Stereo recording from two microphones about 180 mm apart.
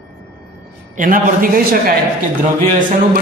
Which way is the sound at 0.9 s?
50° right (ahead or behind).